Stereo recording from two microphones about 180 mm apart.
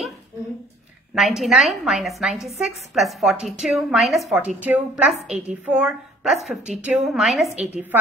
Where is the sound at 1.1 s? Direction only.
Centre (ahead or behind).